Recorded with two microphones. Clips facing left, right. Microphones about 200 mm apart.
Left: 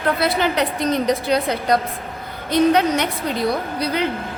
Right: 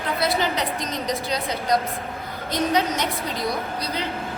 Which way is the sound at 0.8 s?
60° left (ahead or behind).